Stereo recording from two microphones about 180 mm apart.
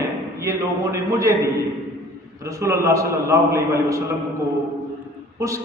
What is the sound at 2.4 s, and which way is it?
A man's voice, 15° right (ahead or behind).